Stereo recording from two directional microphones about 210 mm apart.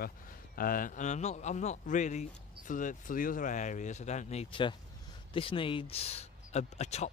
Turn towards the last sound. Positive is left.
turn(degrees=30)  # may be behind; listen again after turning